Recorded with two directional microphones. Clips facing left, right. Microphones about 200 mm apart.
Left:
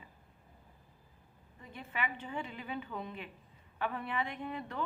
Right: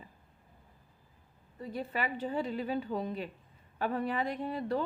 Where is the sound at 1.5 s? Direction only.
35° right (ahead or behind).